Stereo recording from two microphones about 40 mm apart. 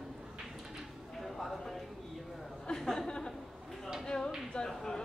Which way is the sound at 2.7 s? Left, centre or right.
Centre.